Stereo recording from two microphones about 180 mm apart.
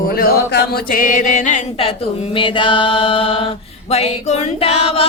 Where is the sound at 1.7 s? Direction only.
30° left (ahead or behind).